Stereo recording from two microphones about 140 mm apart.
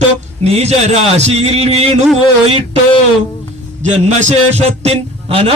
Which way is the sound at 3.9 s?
55° right (ahead or behind).